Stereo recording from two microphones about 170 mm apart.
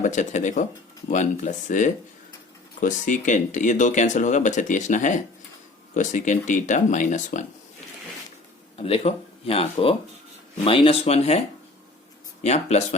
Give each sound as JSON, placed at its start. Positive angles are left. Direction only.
{"t": 0.0, "sound": "speech", "side_deg": 45}
{"t": 8.8, "sound": "speech", "side_deg": 35}
{"t": 12.4, "sound": "speech", "side_deg": 40}